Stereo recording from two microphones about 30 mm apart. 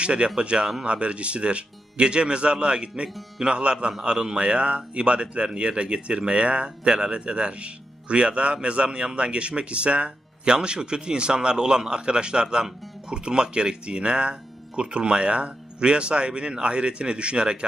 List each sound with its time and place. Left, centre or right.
0.0 s a man's voice: right